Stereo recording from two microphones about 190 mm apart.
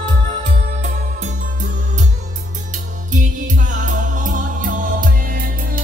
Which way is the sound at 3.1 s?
40° right (ahead or behind).